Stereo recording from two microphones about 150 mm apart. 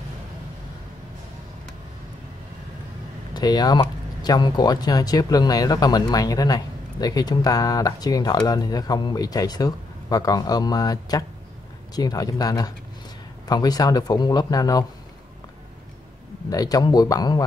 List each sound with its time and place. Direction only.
3.3 s speech: 25° left (ahead or behind)
16.4 s speech: 25° left (ahead or behind)